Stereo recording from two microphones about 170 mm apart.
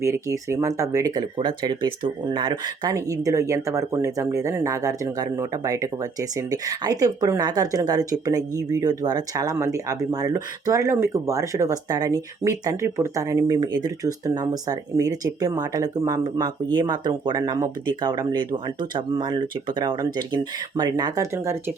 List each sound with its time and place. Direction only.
0.0 s speech: 15° right (ahead or behind)